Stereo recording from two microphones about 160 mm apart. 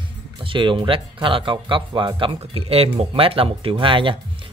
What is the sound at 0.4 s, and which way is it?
Speech, 30° right (ahead or behind).